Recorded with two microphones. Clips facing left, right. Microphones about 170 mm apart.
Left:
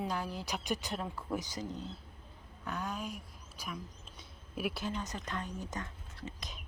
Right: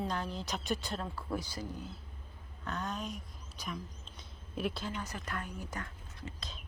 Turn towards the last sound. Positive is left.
turn(degrees=20)  # may be behind; listen again after turning